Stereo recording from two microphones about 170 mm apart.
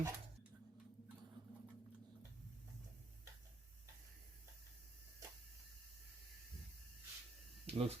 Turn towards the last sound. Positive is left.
turn(degrees=-35)  # may be behind; listen again after turning